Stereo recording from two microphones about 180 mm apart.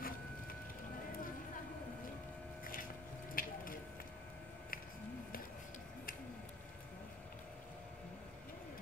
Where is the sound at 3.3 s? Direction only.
50° left (ahead or behind).